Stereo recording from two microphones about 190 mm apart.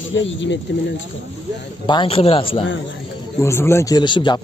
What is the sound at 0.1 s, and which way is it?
Speech, 75° left (ahead or behind).